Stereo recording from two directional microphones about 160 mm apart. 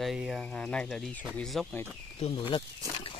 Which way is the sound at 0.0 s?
5° right (ahead or behind).